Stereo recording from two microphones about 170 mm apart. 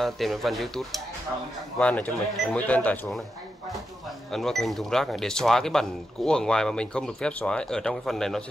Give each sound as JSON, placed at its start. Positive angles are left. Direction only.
{"t": 0.0, "sound": "speech", "side_deg": 0}
{"t": 4.3, "sound": "speech", "side_deg": 0}